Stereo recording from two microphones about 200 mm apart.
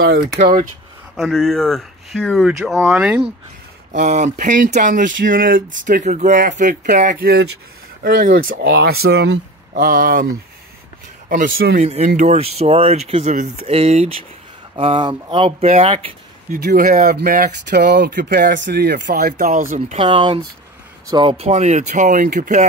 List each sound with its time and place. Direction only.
0.0 s speech: 50° right (ahead or behind)
1.1 s speech: centre (ahead or behind)
3.9 s speech: 35° right (ahead or behind); by 9.8 s 60° right (ahead or behind)
9.8 s speech: 40° right (ahead or behind)
11.2 s speech: 40° right (ahead or behind)
16.5 s speech: 45° right (ahead or behind)
19.7 s speech: 30° right (ahead or behind)